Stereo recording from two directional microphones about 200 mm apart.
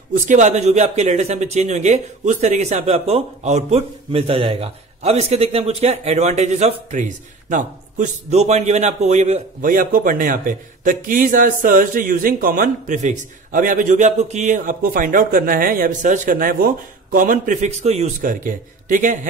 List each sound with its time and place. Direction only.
0.1 s speech: 35° right (ahead or behind)